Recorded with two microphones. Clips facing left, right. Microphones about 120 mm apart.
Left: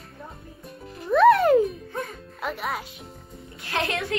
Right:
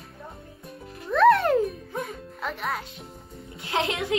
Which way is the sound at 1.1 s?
5° left (ahead or behind).